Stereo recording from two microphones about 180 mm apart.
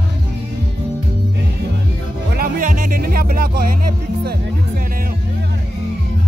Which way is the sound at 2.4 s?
50° right (ahead or behind).